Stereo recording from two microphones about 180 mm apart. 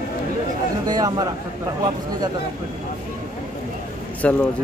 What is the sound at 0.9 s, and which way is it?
Speech, 20° right (ahead or behind).